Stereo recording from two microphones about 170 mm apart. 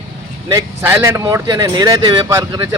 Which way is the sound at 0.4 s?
15° right (ahead or behind).